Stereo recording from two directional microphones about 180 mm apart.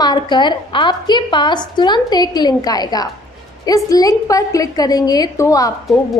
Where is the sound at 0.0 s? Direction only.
25° left (ahead or behind).